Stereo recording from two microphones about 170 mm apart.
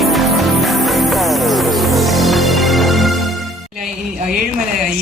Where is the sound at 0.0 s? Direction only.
Centre (ahead or behind).